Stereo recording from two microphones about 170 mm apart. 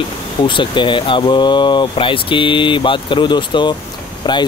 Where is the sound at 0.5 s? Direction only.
30° left (ahead or behind).